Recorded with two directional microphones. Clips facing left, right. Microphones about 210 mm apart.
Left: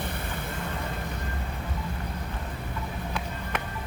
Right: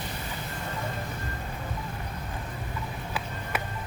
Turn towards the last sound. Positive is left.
turn(degrees=-5)  # may be behind; listen again after turning